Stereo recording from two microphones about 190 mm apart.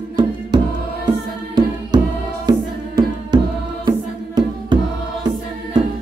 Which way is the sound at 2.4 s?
20° right (ahead or behind).